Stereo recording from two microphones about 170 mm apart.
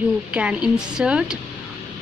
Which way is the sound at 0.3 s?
5° right (ahead or behind).